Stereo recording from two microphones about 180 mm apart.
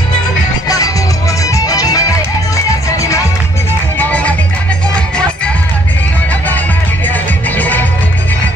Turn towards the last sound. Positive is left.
turn(degrees=10)  # may be behind; listen again after turning